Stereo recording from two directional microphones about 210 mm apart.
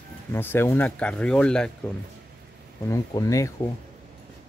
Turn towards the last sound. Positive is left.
turn(degrees=15)  # may be behind; listen again after turning